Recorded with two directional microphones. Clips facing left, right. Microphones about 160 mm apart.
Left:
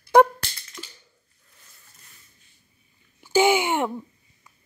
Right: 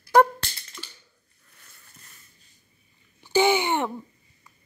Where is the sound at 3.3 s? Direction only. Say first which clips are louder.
Left 1 dB; 10° left (ahead or behind).